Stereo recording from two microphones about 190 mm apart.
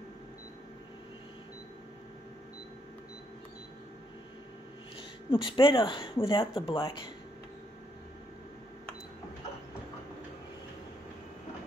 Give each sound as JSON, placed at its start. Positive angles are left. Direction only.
{"t": 5.3, "sound": "speech", "side_deg": 25}